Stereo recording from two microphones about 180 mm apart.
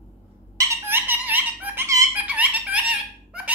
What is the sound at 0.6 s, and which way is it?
Baby laughter, 10° right (ahead or behind).